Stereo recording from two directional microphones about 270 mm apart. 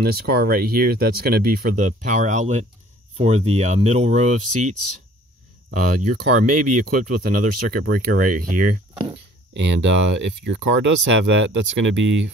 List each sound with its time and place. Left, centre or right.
0.0 s speech: right
8.9 s speech: centre
9.5 s speech: right